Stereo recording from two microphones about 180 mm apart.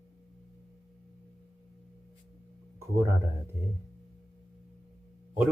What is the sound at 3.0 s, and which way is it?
Speech, 15° right (ahead or behind).